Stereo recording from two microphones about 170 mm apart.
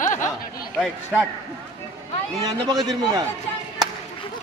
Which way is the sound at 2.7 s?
20° right (ahead or behind).